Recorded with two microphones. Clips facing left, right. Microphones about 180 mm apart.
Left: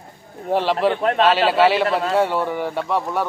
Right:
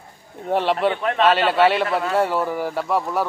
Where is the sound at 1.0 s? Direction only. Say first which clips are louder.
Left 3 dB; 35° left (ahead or behind).